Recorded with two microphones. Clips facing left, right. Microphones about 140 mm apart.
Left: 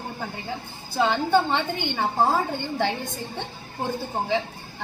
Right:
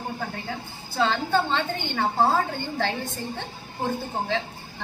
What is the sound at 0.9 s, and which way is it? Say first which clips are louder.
A woman's voice: left 2 dB; 15° left (ahead or behind).